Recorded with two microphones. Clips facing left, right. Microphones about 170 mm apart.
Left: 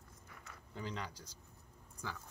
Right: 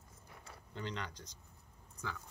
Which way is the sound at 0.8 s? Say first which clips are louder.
Right 1 dB; 5° left (ahead or behind).